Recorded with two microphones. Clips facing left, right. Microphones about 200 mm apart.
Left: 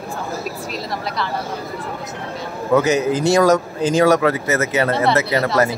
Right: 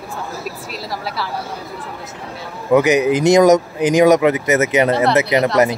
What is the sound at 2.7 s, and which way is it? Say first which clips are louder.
Speech: right 3 dB; 15° right (ahead or behind).